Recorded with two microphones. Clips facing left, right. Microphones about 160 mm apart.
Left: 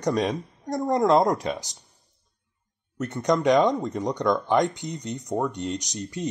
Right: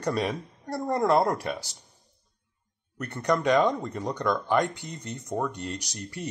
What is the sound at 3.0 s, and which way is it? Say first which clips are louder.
Speech: left 3 dB; 20° left (ahead or behind).